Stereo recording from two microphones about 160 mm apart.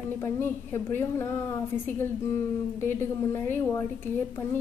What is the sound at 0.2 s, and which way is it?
A woman's voice, 15° left (ahead or behind).